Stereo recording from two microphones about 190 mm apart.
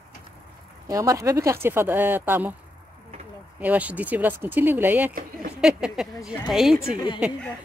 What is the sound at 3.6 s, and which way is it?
Speech, 10° right (ahead or behind).